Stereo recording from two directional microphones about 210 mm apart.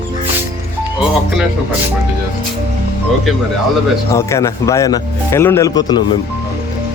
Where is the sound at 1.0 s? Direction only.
5° right (ahead or behind).